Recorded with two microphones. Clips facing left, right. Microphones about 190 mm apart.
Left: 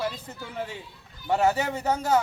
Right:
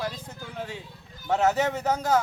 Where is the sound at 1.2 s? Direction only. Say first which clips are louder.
Even; 10° left (ahead or behind).